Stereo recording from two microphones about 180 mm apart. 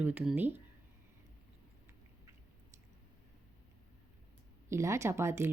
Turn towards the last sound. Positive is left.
turn(degrees=-15)  # may be behind; listen again after turning